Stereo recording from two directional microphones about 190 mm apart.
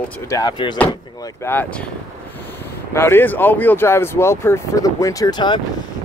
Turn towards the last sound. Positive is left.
turn(degrees=20)  # may be behind; listen again after turning